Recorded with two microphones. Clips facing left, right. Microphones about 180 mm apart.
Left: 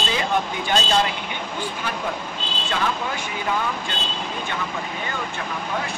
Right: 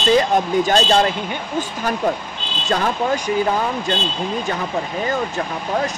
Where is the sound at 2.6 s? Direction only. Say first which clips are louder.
Right 7 dB; 40° right (ahead or behind).